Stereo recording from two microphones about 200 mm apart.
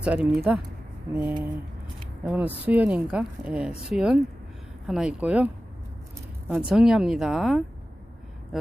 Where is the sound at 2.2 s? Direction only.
10° right (ahead or behind).